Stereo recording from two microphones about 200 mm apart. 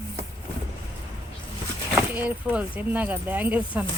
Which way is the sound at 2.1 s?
10° right (ahead or behind).